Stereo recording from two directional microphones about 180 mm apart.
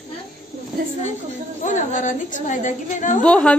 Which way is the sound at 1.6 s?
45° left (ahead or behind).